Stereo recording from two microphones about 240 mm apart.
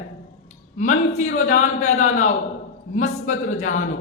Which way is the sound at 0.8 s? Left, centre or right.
Left.